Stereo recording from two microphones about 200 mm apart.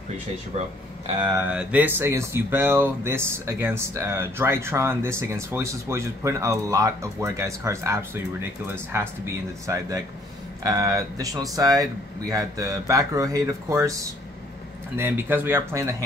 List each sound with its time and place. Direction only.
1.2 s speech: 5° right (ahead or behind)